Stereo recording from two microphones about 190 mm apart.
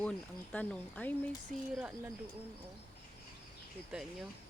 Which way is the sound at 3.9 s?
5° right (ahead or behind).